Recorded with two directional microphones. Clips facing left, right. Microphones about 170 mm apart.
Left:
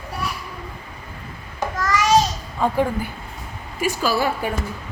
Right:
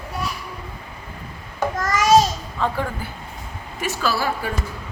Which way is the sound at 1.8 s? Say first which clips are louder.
Right 1 dB; 50° right (ahead or behind).